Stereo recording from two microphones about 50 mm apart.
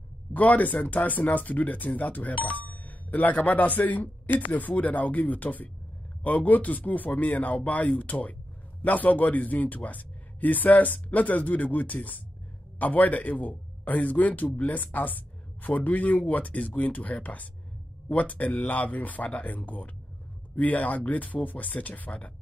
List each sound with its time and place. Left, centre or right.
0.3 s speech: left